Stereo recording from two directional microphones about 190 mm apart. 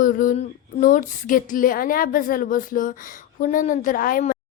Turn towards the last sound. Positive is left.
turn(degrees=45)  # may be behind; listen again after turning